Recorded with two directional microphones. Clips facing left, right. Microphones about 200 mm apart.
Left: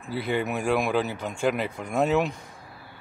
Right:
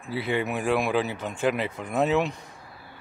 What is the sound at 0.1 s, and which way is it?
Speech, centre (ahead or behind).